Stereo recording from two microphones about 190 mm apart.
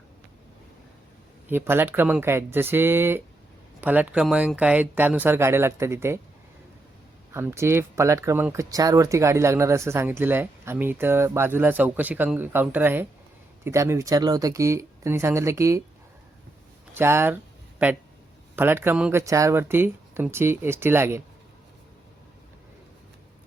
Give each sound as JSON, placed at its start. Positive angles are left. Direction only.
{"t": 1.5, "sound": "speech", "side_deg": -10}
{"t": 7.3, "sound": "speech", "side_deg": -15}
{"t": 16.9, "sound": "speech", "side_deg": -15}
{"t": 18.5, "sound": "speech", "side_deg": -10}